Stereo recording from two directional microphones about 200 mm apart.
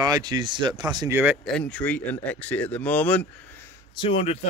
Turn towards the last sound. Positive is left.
turn(degrees=30)  # may be behind; listen again after turning